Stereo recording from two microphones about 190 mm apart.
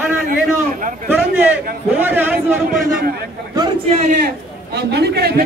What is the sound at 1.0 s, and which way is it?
A man's voice, 10° right (ahead or behind).